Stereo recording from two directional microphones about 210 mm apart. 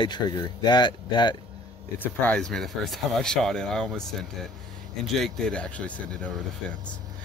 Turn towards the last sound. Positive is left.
turn(degrees=5)  # may be behind; listen again after turning